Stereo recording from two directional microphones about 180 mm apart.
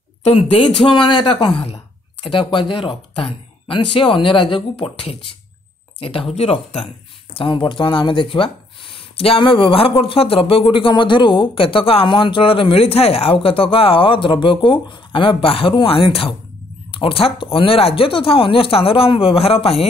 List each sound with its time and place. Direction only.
0.2 s speech: 35° left (ahead or behind)